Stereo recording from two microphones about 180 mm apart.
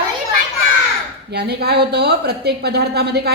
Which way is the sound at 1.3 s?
65° right (ahead or behind).